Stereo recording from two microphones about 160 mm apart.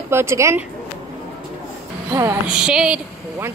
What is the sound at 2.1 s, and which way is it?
Speech, 15° right (ahead or behind).